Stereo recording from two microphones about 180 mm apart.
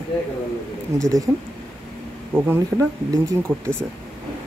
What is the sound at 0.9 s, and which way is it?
Speech, 20° right (ahead or behind).